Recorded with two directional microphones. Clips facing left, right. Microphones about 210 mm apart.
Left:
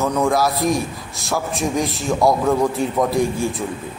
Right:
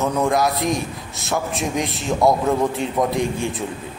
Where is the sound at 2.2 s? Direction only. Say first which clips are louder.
Even; 20° right (ahead or behind).